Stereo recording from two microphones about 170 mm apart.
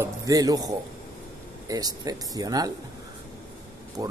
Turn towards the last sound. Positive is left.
turn(degrees=-20)  # may be behind; listen again after turning